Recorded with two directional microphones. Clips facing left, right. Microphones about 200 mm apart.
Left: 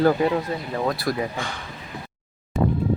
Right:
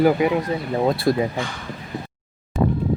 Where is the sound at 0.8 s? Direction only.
25° right (ahead or behind).